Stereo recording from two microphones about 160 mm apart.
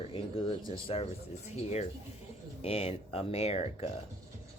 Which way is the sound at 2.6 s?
40° left (ahead or behind).